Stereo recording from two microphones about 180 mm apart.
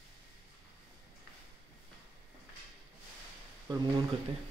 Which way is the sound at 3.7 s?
25° right (ahead or behind).